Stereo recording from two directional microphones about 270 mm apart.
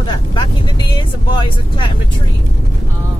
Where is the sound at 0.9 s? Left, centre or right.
Centre.